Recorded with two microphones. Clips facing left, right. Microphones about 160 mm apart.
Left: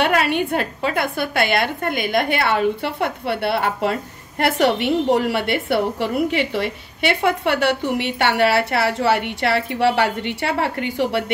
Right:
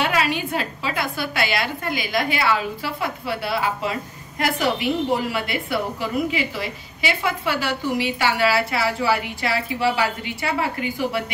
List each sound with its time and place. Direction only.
0.0 s a woman's voice: 60° left (ahead or behind)